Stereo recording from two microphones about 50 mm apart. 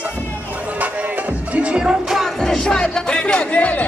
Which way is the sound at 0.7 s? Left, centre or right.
Right.